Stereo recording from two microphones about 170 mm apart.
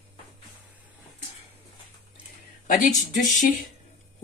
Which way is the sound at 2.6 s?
50° left (ahead or behind).